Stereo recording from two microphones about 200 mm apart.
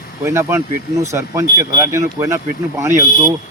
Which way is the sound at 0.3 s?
15° right (ahead or behind).